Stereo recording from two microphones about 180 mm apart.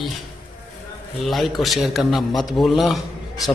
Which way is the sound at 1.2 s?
Centre (ahead or behind).